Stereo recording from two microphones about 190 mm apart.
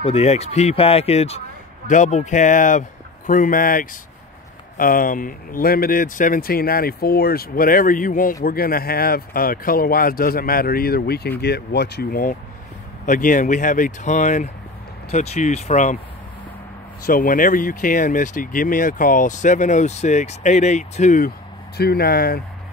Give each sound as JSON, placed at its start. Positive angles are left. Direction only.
{"t": 0.0, "sound": "speech", "side_deg": 30}
{"t": 17.0, "sound": "speech", "side_deg": 45}
{"t": 21.7, "sound": "speech", "side_deg": 55}